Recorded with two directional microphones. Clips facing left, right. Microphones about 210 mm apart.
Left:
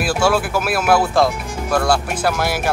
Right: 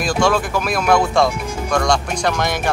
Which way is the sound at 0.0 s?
5° left (ahead or behind).